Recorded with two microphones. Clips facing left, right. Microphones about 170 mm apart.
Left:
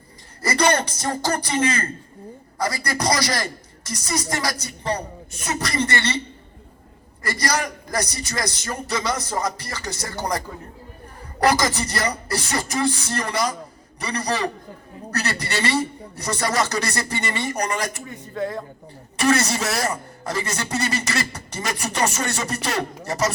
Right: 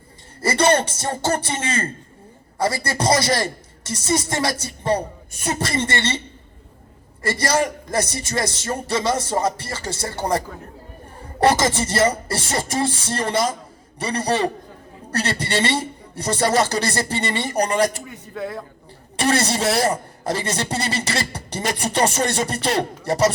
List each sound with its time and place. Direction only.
0.4 s a man's voice: 25° right (ahead or behind)
7.2 s a man's voice: 25° right (ahead or behind)
18.0 s speech: 5° right (ahead or behind)
19.1 s a man's voice: 30° right (ahead or behind)